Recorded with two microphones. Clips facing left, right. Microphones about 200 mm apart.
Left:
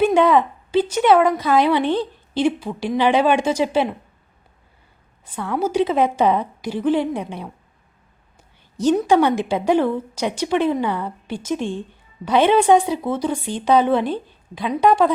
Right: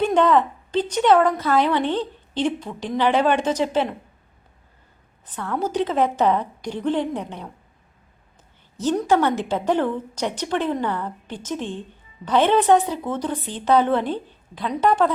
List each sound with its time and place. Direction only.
0.0 s a woman's voice: 10° left (ahead or behind)
5.2 s a woman's voice: 10° left (ahead or behind)
8.8 s a woman's voice: 15° left (ahead or behind)